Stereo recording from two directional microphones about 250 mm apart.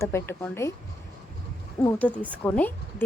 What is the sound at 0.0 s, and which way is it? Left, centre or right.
Speech, centre.